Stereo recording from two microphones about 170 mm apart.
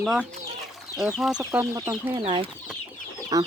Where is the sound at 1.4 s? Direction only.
15° right (ahead or behind).